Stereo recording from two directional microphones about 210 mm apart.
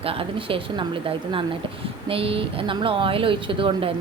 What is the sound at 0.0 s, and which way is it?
A woman's voice, 25° right (ahead or behind).